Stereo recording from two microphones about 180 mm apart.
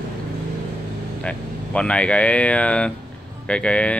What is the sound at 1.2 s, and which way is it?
Speech, 5° left (ahead or behind).